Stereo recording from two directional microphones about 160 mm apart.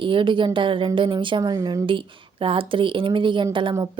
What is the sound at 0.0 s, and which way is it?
A woman's voice, 30° right (ahead or behind).